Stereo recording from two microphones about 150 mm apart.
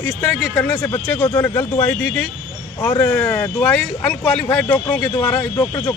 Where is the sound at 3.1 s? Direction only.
10° left (ahead or behind).